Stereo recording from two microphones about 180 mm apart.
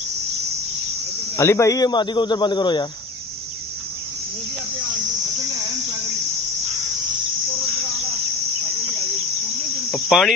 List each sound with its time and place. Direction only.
1.3 s speech: 15° left (ahead or behind)
9.8 s cricket: centre (ahead or behind)